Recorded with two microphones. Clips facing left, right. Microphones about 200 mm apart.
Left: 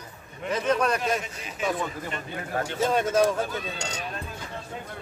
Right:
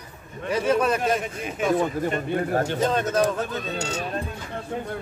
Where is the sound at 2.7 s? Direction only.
10° left (ahead or behind).